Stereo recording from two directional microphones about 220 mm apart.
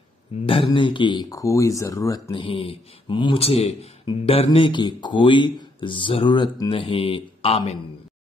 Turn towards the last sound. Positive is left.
turn(degrees=25)  # may be behind; listen again after turning